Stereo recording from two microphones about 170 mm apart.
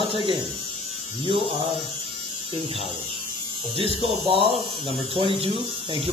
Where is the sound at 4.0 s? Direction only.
35° right (ahead or behind).